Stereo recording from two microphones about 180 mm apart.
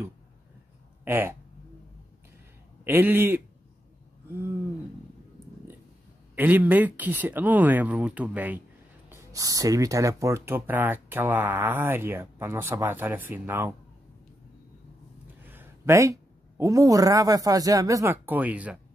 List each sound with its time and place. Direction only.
1.0 s speech: 10° right (ahead or behind)
2.8 s speech: 10° right (ahead or behind)
6.3 s speech: 10° right (ahead or behind)
15.4 s a man's voice: 10° right (ahead or behind)